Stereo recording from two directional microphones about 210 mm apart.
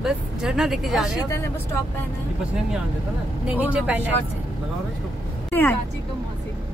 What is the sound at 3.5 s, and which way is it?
Speech, 5° right (ahead or behind).